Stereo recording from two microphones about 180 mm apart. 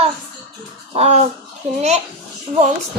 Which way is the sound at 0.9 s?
35° right (ahead or behind).